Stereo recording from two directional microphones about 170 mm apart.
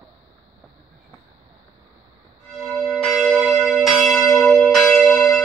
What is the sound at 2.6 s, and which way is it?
Church bell, centre (ahead or behind).